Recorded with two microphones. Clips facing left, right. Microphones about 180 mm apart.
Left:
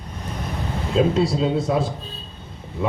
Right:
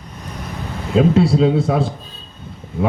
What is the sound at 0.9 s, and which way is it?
Speech, 60° right (ahead or behind).